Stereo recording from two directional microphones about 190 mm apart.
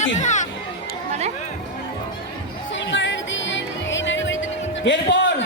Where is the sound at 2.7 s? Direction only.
75° left (ahead or behind).